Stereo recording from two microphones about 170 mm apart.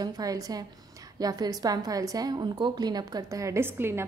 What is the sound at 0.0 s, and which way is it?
A woman's voice, 20° right (ahead or behind).